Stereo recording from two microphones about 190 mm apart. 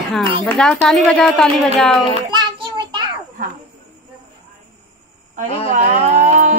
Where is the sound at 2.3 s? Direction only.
25° right (ahead or behind).